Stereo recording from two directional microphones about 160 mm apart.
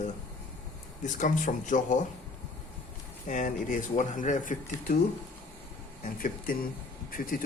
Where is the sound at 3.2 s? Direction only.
55° left (ahead or behind).